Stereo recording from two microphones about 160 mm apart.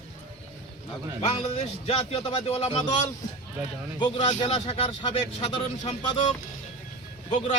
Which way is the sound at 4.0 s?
30° left (ahead or behind).